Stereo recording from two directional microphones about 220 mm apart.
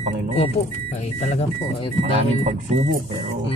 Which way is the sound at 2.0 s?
30° right (ahead or behind).